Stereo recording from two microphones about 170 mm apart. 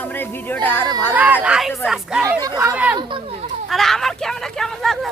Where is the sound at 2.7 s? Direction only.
10° right (ahead or behind).